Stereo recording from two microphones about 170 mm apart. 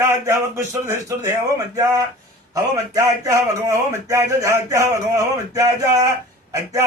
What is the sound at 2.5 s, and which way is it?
A man's voice, 20° right (ahead or behind).